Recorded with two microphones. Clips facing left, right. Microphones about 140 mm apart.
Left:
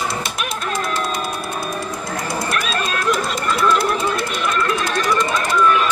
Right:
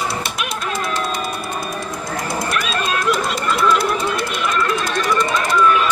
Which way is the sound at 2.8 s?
50° left (ahead or behind).